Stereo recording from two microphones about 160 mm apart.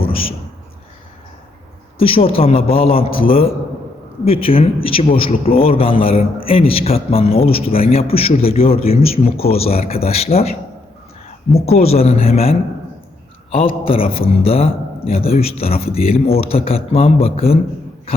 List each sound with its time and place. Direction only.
0.0 s a sound: 35° left (ahead or behind)
2.0 s a man's voice: 35° left (ahead or behind)
11.6 s a man's voice: 40° left (ahead or behind)